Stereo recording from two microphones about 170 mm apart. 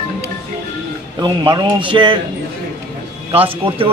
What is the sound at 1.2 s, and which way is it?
Speech, 25° right (ahead or behind).